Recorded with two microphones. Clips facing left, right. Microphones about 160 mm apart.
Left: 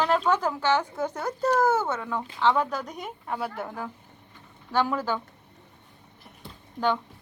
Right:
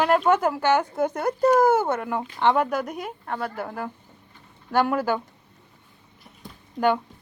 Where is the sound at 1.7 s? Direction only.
55° right (ahead or behind).